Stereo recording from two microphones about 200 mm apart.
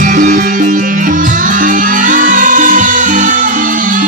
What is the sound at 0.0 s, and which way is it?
Music, 40° right (ahead or behind).